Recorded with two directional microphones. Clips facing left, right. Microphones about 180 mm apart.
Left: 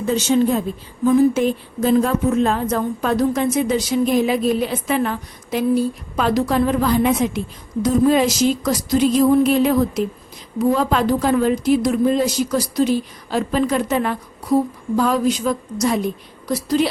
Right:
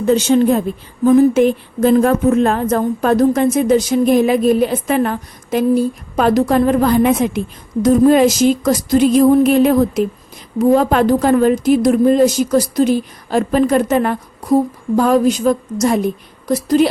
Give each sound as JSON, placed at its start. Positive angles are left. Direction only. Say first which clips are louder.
{"t": 0.0, "sound": "a woman's voice", "louder": "right 5 dB", "side_deg": -60}